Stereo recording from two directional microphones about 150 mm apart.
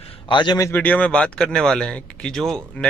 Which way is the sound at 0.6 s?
10° left (ahead or behind).